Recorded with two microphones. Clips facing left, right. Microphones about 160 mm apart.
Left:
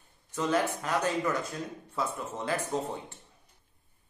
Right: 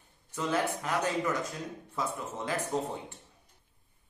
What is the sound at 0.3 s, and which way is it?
Speech, 20° left (ahead or behind).